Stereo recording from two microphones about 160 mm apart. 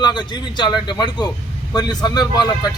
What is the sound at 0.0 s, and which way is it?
Speech, 25° left (ahead or behind).